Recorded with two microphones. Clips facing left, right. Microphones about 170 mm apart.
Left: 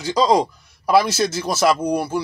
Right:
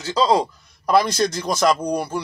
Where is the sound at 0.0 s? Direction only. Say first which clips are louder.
Left 2 dB; 15° left (ahead or behind).